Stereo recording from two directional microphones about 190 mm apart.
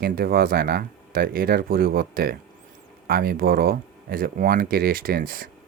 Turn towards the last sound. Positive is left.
turn(degrees=-50)  # may be behind; listen again after turning